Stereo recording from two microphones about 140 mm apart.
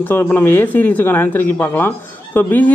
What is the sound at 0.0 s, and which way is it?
Speech, 15° left (ahead or behind).